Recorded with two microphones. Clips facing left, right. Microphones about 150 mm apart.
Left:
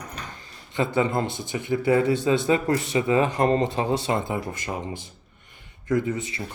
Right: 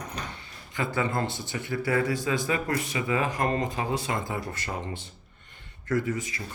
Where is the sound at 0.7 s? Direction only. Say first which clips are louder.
Left 5 dB; 25° left (ahead or behind).